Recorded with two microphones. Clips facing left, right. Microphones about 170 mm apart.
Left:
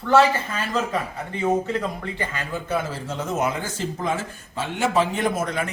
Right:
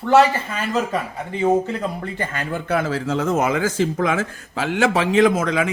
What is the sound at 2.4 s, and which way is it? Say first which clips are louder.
Speech: right 5 dB; 65° right (ahead or behind).